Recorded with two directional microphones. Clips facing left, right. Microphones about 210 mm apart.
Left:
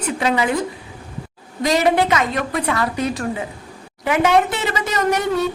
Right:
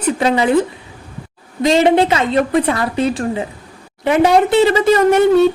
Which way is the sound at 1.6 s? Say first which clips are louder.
Right 5 dB; 25° right (ahead or behind).